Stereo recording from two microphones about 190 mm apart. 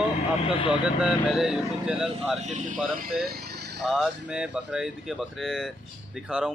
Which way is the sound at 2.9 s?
50° right (ahead or behind).